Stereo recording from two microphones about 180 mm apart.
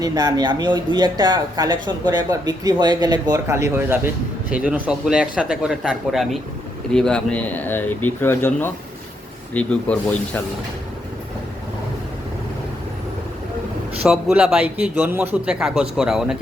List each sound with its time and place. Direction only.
0.0 s speech: 20° right (ahead or behind); by 10.4 s 10° left (ahead or behind)
14.0 s a man's voice: 5° right (ahead or behind)